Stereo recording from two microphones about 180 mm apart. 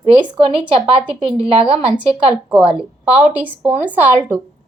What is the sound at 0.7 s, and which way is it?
A woman's voice, 30° right (ahead or behind).